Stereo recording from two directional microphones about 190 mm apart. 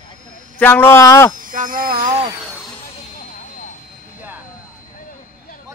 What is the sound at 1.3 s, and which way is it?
Speech, 45° right (ahead or behind).